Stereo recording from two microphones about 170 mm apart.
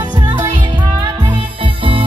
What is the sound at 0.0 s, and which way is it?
Music, 25° right (ahead or behind).